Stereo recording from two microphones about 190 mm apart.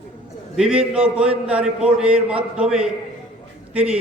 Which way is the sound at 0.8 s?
30° right (ahead or behind).